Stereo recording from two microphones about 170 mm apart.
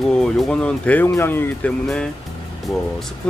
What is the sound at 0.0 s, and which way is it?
Speech, 5° left (ahead or behind).